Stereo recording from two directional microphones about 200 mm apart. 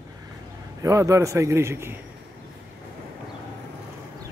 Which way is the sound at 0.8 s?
15° right (ahead or behind).